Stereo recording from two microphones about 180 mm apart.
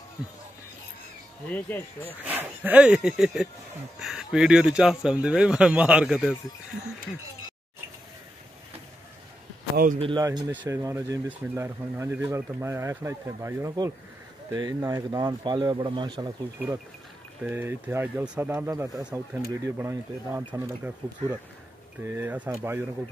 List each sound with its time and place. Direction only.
1.7 s speech: 10° left (ahead or behind)
2.0 s speech: 10° right (ahead or behind)
9.9 s speech: 25° right (ahead or behind)
10.3 s speech: 10° left (ahead or behind)
10.7 s speech: 15° right (ahead or behind)
16.5 s speech: 10° right (ahead or behind)